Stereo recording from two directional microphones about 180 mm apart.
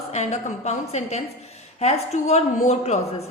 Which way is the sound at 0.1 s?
40° left (ahead or behind).